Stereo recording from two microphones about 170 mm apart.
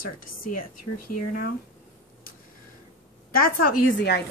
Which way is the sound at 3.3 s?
60° left (ahead or behind).